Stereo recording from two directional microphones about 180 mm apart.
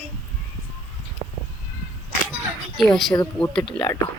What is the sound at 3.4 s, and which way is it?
Speech, 5° left (ahead or behind).